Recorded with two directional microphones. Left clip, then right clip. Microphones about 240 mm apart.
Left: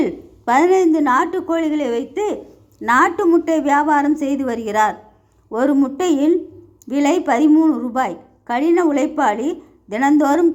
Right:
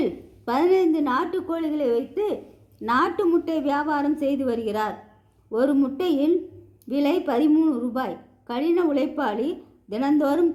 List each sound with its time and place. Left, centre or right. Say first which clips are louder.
0.0 s a woman's voice: left 6 dB; centre